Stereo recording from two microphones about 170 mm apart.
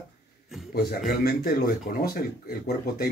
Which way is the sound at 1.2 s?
65° left (ahead or behind).